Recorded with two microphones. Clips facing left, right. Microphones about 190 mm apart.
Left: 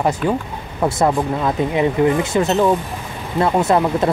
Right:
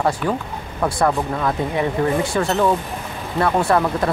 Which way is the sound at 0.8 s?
20° left (ahead or behind).